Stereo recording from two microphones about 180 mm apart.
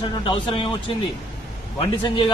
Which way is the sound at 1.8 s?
25° left (ahead or behind).